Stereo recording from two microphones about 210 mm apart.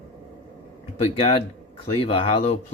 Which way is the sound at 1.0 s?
25° left (ahead or behind).